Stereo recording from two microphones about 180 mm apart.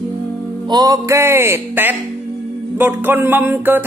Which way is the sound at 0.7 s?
20° right (ahead or behind).